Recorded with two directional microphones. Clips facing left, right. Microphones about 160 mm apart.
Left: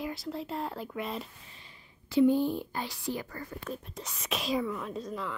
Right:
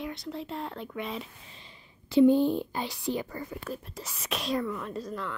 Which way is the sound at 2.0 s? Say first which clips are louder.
Right 4 dB; 25° right (ahead or behind).